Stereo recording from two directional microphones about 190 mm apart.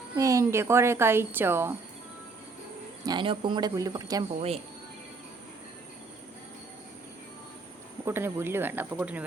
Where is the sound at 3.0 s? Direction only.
25° right (ahead or behind).